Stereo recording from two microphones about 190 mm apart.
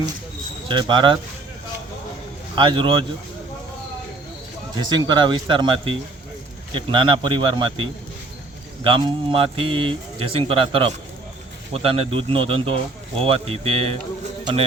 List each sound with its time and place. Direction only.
0.7 s a man's voice: 25° right (ahead or behind)
2.6 s a man's voice: 25° right (ahead or behind)
4.8 s a man's voice: 20° right (ahead or behind)